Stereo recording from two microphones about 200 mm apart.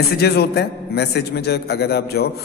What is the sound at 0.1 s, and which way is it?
A man's voice, 55° left (ahead or behind).